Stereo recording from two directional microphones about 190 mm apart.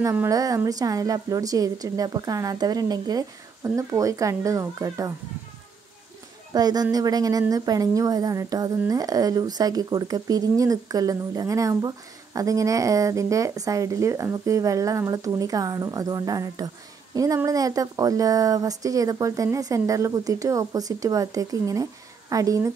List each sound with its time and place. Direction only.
0.0 s a woman's voice: 15° right (ahead or behind)
6.5 s a woman's voice: 20° right (ahead or behind)